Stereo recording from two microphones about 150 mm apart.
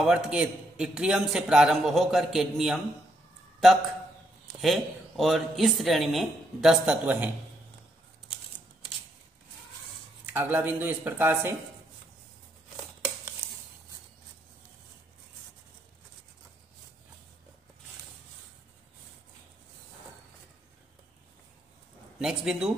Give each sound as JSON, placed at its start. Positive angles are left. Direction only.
{"t": 0.0, "sound": "a man's voice", "side_deg": -5}
{"t": 4.5, "sound": "a man's voice", "side_deg": 0}
{"t": 10.2, "sound": "speech", "side_deg": -15}
{"t": 13.4, "sound": "a sound", "side_deg": -15}
{"t": 22.2, "sound": "a man's voice", "side_deg": -5}